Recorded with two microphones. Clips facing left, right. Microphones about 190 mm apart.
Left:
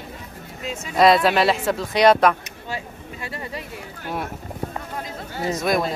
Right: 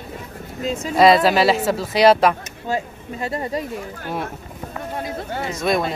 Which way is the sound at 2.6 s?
45° right (ahead or behind).